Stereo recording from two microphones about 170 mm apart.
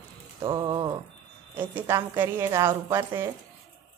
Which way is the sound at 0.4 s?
25° right (ahead or behind).